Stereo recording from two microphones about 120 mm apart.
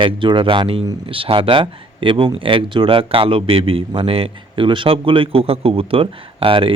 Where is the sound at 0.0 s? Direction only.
45° right (ahead or behind).